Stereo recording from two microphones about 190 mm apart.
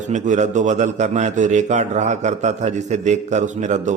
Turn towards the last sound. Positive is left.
turn(degrees=-40)  # may be behind; listen again after turning